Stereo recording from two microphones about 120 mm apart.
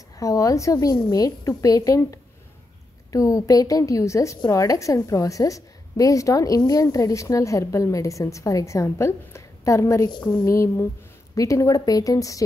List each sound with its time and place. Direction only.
0.2 s a woman's voice: 25° left (ahead or behind)